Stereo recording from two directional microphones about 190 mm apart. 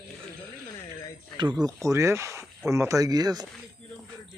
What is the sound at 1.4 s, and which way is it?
Speech, 20° right (ahead or behind).